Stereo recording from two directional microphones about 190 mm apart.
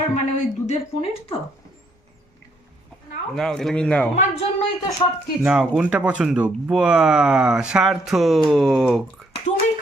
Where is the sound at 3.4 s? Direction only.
Centre (ahead or behind).